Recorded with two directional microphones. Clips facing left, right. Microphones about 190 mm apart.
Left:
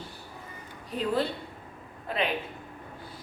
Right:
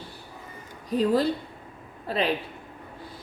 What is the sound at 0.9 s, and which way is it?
A woman's voice, 40° right (ahead or behind).